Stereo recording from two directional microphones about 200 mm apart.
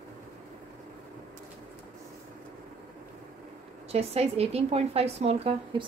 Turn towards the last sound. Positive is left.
turn(degrees=-30)  # may be behind; listen again after turning